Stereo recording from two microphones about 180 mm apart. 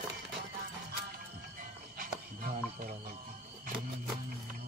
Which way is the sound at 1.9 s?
50° right (ahead or behind).